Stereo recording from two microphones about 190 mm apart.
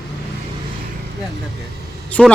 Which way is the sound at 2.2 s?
Centre (ahead or behind).